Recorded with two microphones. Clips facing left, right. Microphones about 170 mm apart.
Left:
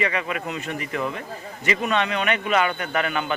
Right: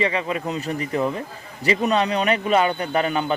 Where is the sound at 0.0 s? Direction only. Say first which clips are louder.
Right 3 dB; 30° right (ahead or behind).